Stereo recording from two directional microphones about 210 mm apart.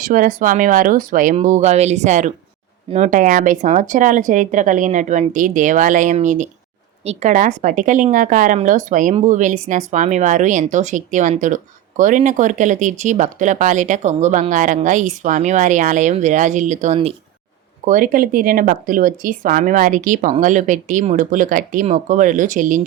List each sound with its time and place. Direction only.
0.0 s speech: 40° right (ahead or behind)